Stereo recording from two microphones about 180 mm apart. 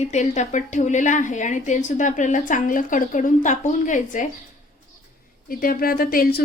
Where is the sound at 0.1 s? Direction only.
40° left (ahead or behind).